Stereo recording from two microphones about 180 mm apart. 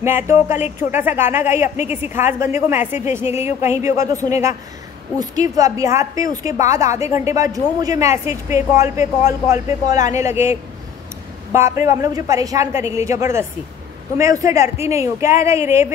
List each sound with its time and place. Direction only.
0.0 s a woman's voice: 15° right (ahead or behind)
5.2 s a woman's voice: 20° right (ahead or behind)